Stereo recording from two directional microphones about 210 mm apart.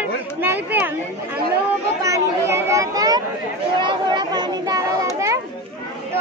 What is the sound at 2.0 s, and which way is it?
Children playing, 15° right (ahead or behind).